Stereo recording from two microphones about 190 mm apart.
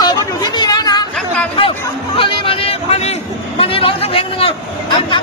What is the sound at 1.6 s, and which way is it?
Speech, 30° left (ahead or behind).